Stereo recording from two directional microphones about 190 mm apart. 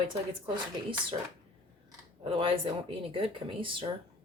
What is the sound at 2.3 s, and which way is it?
Speech, 30° right (ahead or behind).